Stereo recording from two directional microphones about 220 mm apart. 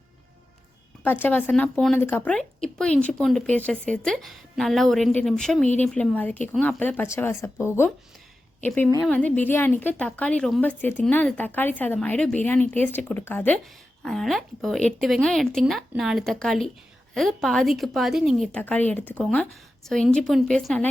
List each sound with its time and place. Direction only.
1.0 s a woman's voice: 10° left (ahead or behind)